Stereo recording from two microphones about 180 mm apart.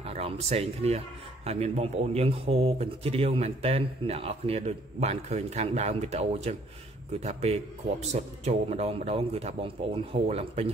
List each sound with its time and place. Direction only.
0.1 s a man's voice: 35° right (ahead or behind)